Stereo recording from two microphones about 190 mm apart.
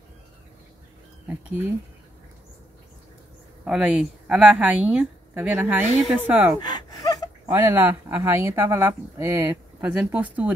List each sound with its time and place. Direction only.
3.6 s a woman's voice: 5° right (ahead or behind)
6.6 s gasp: 20° left (ahead or behind)
7.4 s a woman's voice: 15° right (ahead or behind)